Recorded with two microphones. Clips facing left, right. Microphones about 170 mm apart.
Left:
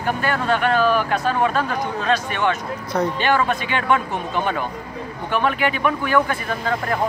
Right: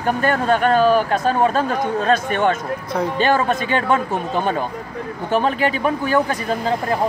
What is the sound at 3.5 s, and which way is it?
Speech, 40° right (ahead or behind).